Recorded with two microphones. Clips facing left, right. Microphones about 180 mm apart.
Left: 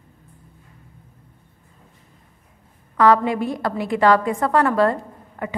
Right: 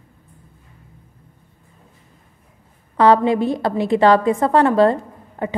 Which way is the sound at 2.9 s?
25° right (ahead or behind).